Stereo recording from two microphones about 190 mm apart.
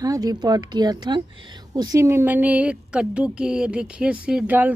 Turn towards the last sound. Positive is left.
turn(degrees=-10)  # may be behind; listen again after turning